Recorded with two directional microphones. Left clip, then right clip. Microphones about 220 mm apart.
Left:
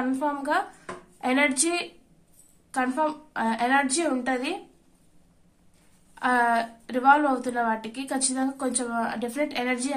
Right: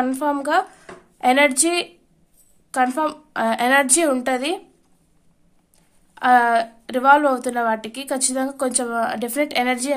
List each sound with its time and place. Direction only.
0.0 s a woman's voice: 45° right (ahead or behind)
6.1 s a woman's voice: 40° right (ahead or behind)